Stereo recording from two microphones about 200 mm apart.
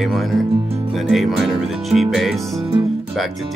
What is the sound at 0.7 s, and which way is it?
Music, 30° right (ahead or behind).